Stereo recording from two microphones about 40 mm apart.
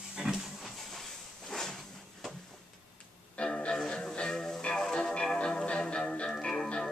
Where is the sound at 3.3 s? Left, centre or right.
Left.